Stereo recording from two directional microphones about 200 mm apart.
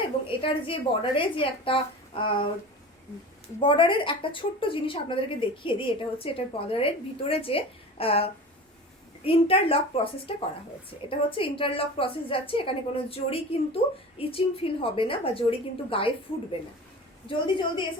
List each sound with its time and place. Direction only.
0.3 s a woman's voice: 25° left (ahead or behind)
3.6 s a woman's voice: 25° left (ahead or behind)
17.2 s a woman's voice: 25° left (ahead or behind)